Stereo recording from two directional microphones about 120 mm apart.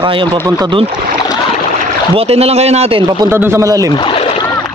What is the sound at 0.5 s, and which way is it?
Speech, 35° right (ahead or behind).